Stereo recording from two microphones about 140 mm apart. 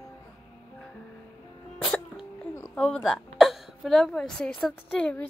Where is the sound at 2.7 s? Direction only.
5° left (ahead or behind).